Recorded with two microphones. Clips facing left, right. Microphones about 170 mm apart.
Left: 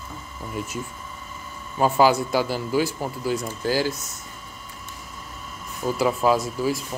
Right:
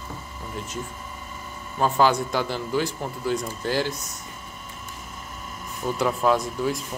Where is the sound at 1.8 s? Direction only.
5° left (ahead or behind).